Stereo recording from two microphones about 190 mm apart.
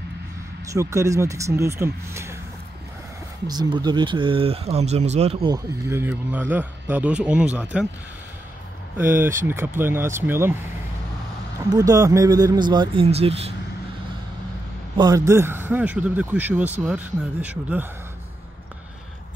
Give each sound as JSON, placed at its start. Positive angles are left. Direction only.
{"t": 0.7, "sound": "speech", "side_deg": -15}
{"t": 3.4, "sound": "speech", "side_deg": -20}
{"t": 5.9, "sound": "speech", "side_deg": -10}
{"t": 8.9, "sound": "speech", "side_deg": -10}
{"t": 11.7, "sound": "speech", "side_deg": -20}
{"t": 15.0, "sound": "speech", "side_deg": -20}